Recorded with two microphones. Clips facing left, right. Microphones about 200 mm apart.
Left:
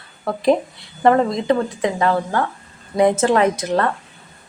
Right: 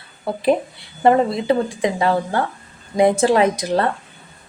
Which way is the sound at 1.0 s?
10° right (ahead or behind).